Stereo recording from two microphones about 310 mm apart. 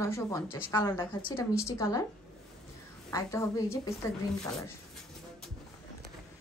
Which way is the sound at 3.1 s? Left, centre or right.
Centre.